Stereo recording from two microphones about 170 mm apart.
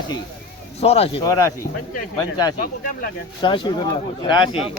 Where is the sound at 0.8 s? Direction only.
35° left (ahead or behind).